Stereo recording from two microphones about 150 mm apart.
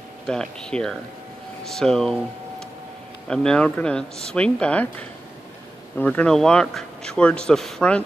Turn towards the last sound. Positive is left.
turn(degrees=5)  # may be behind; listen again after turning